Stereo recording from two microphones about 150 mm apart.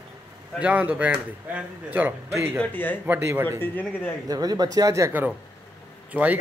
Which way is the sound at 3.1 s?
15° right (ahead or behind).